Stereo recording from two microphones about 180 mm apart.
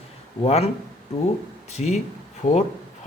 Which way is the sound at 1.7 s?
40° left (ahead or behind).